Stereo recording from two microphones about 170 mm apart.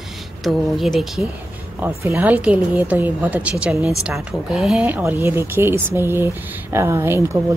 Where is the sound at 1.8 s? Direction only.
10° right (ahead or behind).